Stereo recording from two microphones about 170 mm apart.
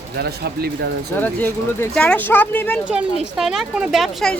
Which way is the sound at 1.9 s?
5° left (ahead or behind).